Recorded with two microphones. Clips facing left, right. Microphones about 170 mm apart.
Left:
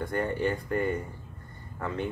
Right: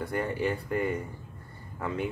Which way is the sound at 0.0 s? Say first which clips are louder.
Left 1 dB; 5° right (ahead or behind).